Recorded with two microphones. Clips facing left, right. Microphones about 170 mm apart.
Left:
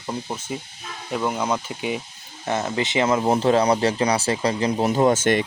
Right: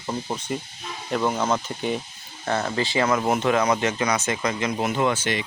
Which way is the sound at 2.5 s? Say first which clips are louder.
Left 1 dB; 20° left (ahead or behind).